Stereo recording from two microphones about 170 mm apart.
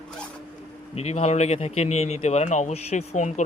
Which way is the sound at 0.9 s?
40° left (ahead or behind).